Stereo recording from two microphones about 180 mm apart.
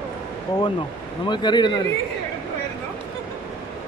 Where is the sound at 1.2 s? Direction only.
25° left (ahead or behind).